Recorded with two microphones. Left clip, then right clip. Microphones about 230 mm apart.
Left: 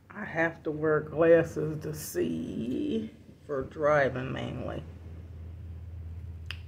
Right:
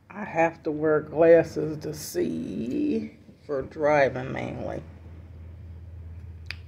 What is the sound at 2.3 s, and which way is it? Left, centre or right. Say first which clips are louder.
Speech: right 3 dB; right.